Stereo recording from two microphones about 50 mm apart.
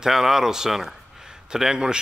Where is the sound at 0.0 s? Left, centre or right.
Centre.